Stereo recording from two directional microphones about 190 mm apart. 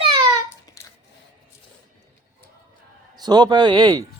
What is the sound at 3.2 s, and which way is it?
Speech, 20° right (ahead or behind).